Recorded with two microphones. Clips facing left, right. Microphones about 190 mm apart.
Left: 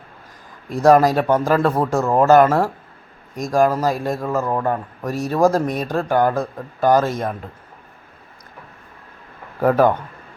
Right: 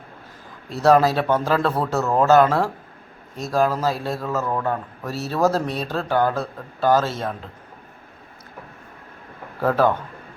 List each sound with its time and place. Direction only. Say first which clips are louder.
0.7 s a man's voice: left 3 dB; 15° left (ahead or behind)
9.6 s speech: left 4 dB; 15° left (ahead or behind)